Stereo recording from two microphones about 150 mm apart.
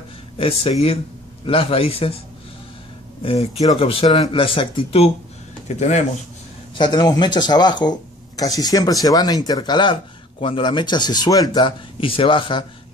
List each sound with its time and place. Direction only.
0.4 s speech: 40° left (ahead or behind)
3.2 s speech: 40° left (ahead or behind)
5.7 s speech: 50° left (ahead or behind)
6.7 s speech: 30° left (ahead or behind)